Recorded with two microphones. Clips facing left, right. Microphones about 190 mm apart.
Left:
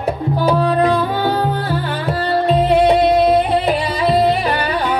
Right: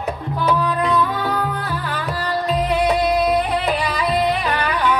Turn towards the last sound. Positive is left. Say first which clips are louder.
# left 2 dB
turn(degrees=30)  # may be behind; listen again after turning